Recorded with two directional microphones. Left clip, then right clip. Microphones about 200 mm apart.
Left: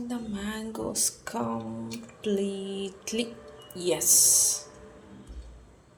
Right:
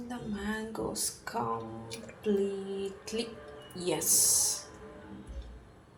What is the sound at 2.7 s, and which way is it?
A woman's voice, 35° left (ahead or behind).